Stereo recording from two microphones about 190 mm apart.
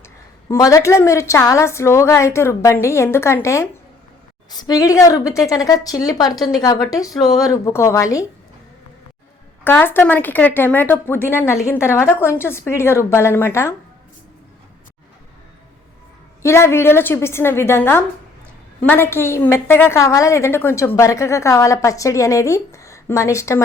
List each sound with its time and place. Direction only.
0.4 s a woman's voice: 15° left (ahead or behind)
9.6 s a woman's voice: 10° left (ahead or behind)
16.4 s a woman's voice: 15° left (ahead or behind)